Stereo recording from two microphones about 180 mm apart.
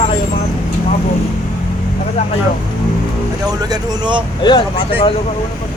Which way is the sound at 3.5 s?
20° right (ahead or behind).